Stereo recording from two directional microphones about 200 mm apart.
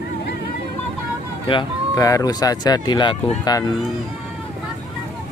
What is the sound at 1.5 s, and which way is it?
Speech, 20° left (ahead or behind).